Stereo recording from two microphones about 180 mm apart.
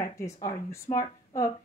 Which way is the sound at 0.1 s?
15° left (ahead or behind).